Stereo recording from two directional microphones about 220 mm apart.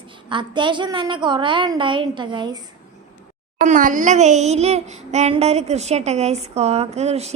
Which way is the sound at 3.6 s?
35° right (ahead or behind).